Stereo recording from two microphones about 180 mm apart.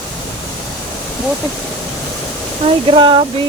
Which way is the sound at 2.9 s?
25° right (ahead or behind).